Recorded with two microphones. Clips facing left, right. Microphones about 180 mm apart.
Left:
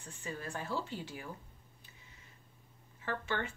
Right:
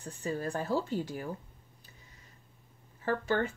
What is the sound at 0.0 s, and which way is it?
Speech, 40° right (ahead or behind).